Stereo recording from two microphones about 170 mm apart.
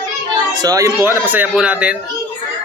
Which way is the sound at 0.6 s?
20° right (ahead or behind).